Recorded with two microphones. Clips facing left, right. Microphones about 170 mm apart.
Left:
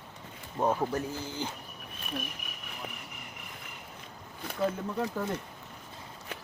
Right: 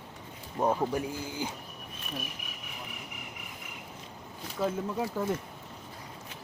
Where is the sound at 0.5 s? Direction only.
5° right (ahead or behind).